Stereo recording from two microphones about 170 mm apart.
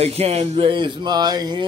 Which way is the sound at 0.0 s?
35° right (ahead or behind).